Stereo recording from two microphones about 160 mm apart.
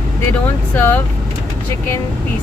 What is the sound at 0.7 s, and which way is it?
Speech, 10° left (ahead or behind).